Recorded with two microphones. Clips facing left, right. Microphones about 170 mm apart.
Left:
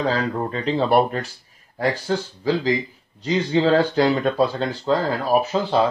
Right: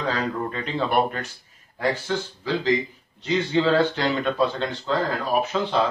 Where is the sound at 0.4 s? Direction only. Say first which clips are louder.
Left 4 dB; 30° left (ahead or behind).